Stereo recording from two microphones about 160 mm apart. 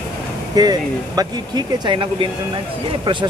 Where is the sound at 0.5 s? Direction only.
25° right (ahead or behind).